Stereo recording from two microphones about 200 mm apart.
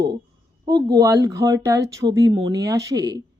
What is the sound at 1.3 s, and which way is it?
Speech, 20° right (ahead or behind).